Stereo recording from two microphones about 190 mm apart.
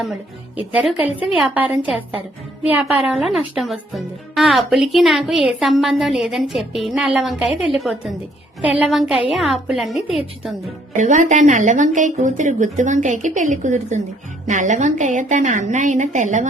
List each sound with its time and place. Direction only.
0.0 s speech: 5° right (ahead or behind)
10.9 s a woman's voice: 40° right (ahead or behind)